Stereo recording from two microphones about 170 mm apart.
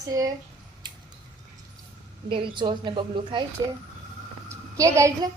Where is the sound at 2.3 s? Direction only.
30° right (ahead or behind).